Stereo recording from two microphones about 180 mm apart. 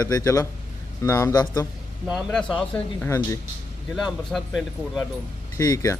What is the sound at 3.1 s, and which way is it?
Speech, 15° left (ahead or behind).